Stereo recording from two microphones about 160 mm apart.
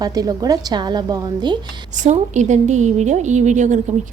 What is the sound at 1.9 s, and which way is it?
A woman's voice, 50° right (ahead or behind).